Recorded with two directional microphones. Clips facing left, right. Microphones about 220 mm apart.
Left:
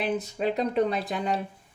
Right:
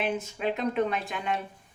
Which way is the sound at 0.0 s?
35° left (ahead or behind).